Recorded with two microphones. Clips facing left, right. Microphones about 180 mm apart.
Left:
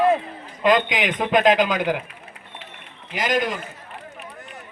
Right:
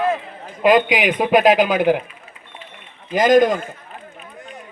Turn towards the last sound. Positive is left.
turn(degrees=-45)  # may be behind; listen again after turning